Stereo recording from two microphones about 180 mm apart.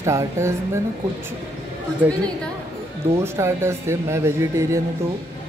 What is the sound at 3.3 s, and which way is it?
Speech, 15° right (ahead or behind).